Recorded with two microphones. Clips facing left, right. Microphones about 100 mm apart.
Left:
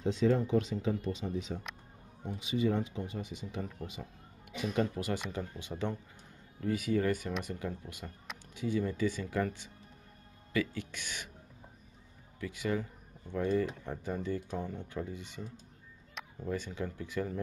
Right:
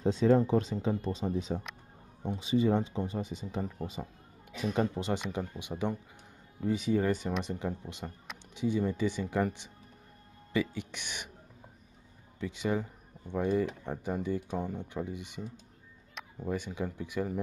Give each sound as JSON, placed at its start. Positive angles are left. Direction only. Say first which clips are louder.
{"t": 0.0, "sound": "speech", "louder": "right 4 dB", "side_deg": -35}
{"t": 5.3, "sound": "speech", "louder": "right 3 dB", "side_deg": -15}
{"t": 12.4, "sound": "speech", "louder": "right 2 dB", "side_deg": -20}